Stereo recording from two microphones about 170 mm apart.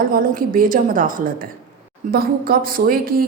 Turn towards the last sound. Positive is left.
turn(degrees=-60)  # may be behind; listen again after turning